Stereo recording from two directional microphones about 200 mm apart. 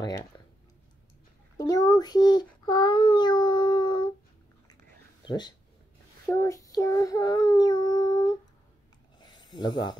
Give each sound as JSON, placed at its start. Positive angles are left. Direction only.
{"t": 0.0, "sound": "speech", "side_deg": 15}
{"t": 1.6, "sound": "child singing", "side_deg": 15}
{"t": 5.2, "sound": "speech", "side_deg": 20}
{"t": 6.3, "sound": "child singing", "side_deg": 15}
{"t": 9.2, "sound": "a sound", "side_deg": 20}